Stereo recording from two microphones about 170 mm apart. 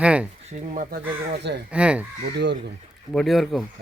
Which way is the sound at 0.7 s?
45° right (ahead or behind).